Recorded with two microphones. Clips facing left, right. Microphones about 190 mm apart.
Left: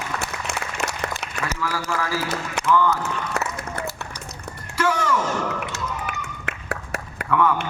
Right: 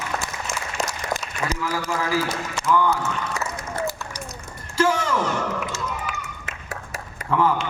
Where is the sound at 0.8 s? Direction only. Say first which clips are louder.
Right 2 dB; 65° left (ahead or behind).